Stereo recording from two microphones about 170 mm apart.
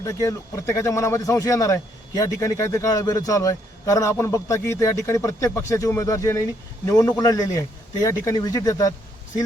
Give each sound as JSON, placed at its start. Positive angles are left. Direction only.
{"t": 0.0, "sound": "speech", "side_deg": 20}